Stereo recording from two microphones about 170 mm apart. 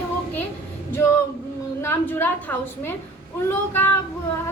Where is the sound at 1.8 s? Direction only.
15° left (ahead or behind).